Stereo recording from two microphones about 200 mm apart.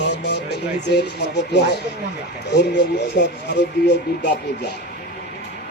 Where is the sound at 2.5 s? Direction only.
55° left (ahead or behind).